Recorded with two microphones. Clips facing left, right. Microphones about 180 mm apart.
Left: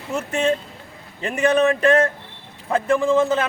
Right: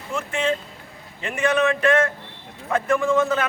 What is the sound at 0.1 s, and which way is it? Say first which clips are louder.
A man's voice: left 3 dB; 40° left (ahead or behind).